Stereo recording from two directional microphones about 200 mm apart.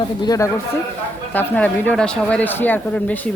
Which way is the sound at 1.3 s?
5° left (ahead or behind).